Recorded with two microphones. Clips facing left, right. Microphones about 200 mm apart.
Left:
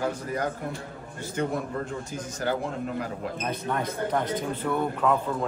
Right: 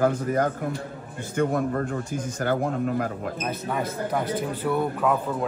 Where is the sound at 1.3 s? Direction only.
50° right (ahead or behind).